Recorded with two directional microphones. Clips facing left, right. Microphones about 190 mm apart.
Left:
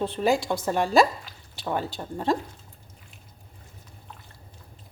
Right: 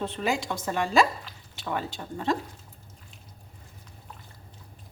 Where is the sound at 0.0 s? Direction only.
35° left (ahead or behind).